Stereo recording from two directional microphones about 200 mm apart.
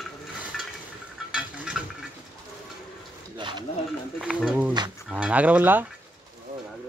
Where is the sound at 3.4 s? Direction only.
25° right (ahead or behind).